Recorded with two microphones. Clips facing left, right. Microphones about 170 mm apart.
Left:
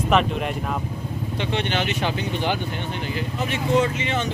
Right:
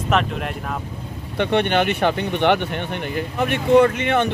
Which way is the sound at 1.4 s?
55° right (ahead or behind).